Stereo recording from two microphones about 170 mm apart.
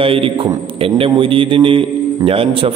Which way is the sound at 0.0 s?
30° right (ahead or behind).